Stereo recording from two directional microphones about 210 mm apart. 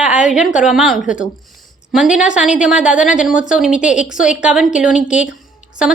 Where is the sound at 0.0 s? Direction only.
5° right (ahead or behind).